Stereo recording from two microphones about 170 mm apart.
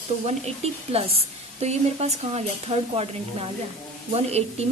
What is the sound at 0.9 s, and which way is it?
A woman's voice, 35° right (ahead or behind).